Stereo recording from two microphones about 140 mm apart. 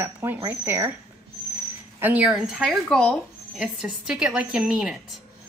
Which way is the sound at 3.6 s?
5° right (ahead or behind).